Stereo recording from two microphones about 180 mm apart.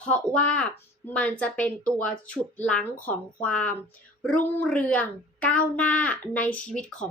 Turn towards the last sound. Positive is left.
turn(degrees=5)  # may be behind; listen again after turning